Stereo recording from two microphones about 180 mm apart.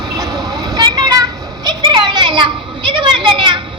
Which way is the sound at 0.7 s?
25° right (ahead or behind).